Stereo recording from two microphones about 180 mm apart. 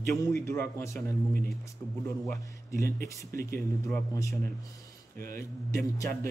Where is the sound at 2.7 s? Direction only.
15° left (ahead or behind).